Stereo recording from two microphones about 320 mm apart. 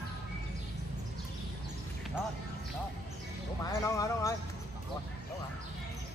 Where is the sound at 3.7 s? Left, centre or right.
Centre.